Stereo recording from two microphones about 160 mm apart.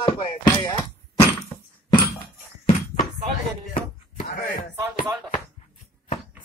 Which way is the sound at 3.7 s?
60° left (ahead or behind).